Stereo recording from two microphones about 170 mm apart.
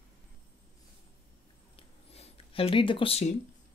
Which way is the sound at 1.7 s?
35° left (ahead or behind).